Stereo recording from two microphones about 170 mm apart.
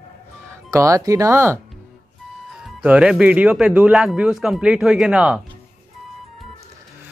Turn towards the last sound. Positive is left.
turn(degrees=-5)  # may be behind; listen again after turning